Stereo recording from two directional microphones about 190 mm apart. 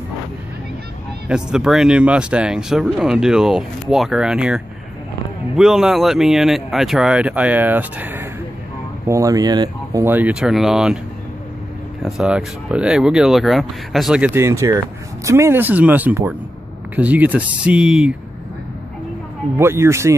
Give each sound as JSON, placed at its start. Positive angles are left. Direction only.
{"t": 1.3, "sound": "speech", "side_deg": -5}
{"t": 5.6, "sound": "speech", "side_deg": 0}
{"t": 10.0, "sound": "speech", "side_deg": -10}
{"t": 12.0, "sound": "speech", "side_deg": -5}
{"t": 19.6, "sound": "speech", "side_deg": -15}